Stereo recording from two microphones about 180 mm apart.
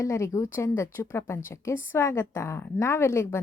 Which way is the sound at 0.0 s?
15° left (ahead or behind).